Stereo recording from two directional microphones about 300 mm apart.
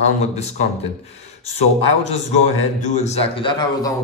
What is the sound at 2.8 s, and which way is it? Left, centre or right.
A man's voice, left.